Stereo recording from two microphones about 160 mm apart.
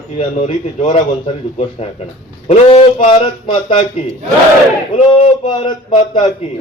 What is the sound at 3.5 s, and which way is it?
Speech, 30° left (ahead or behind).